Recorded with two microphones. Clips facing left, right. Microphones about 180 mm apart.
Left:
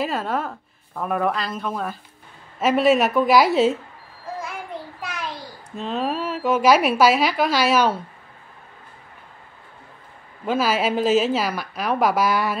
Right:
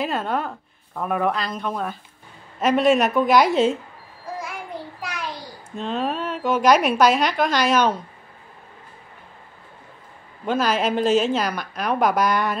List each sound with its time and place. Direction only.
0.0 s a woman's voice: centre (ahead or behind)
5.8 s a woman's voice: 5° left (ahead or behind)
10.4 s a woman's voice: 5° left (ahead or behind)